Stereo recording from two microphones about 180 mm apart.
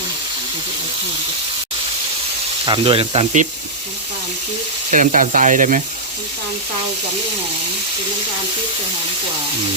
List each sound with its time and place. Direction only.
2.6 s speech: 30° right (ahead or behind)
4.9 s speech: 45° right (ahead or behind)